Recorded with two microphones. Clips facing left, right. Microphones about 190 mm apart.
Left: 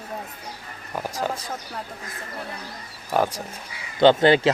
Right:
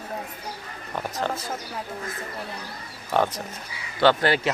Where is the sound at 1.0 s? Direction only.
5° left (ahead or behind).